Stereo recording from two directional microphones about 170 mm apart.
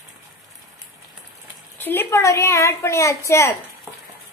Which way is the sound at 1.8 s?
10° left (ahead or behind).